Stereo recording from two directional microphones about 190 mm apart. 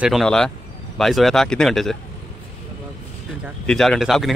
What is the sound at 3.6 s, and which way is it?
Speech, centre (ahead or behind).